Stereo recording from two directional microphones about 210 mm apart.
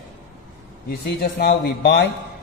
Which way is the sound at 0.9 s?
50° left (ahead or behind).